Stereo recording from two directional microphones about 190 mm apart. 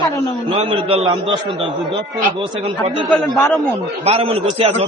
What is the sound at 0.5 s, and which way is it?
Speech, 30° right (ahead or behind).